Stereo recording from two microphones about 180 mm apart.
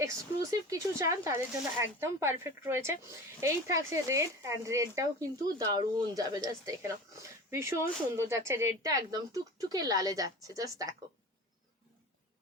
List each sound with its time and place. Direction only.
0.0 s speech: 15° right (ahead or behind)